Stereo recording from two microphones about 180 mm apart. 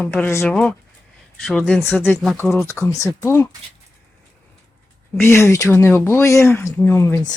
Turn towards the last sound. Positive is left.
turn(degrees=15)  # may be behind; listen again after turning